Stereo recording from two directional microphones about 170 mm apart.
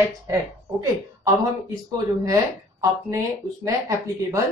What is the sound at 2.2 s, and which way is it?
Speech, 20° right (ahead or behind).